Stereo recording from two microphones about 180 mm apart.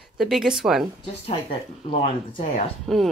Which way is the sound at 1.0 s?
30° left (ahead or behind).